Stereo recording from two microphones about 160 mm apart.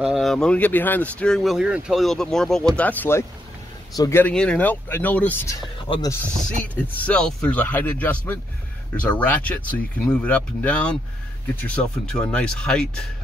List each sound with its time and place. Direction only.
0.0 s speech: centre (ahead or behind); by 4.2 s 20° left (ahead or behind)
4.2 s speech: 5° left (ahead or behind)
5.9 s speech: 25° left (ahead or behind)
6.6 s speech: 10° left (ahead or behind)